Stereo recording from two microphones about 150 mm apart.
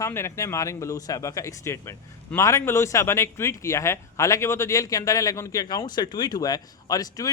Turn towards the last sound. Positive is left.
turn(degrees=25)  # may be behind; listen again after turning